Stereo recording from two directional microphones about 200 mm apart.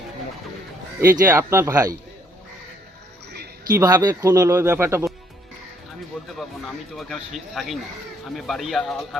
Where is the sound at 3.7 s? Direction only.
20° right (ahead or behind).